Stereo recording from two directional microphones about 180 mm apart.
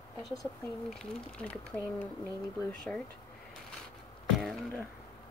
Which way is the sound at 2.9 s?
10° left (ahead or behind).